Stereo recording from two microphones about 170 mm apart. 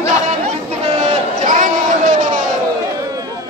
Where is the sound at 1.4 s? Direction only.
45° right (ahead or behind).